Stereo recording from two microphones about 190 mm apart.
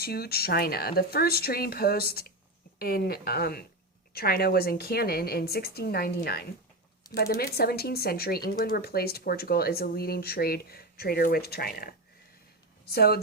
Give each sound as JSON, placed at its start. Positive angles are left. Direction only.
{"t": 0.0, "sound": "speech", "side_deg": 55}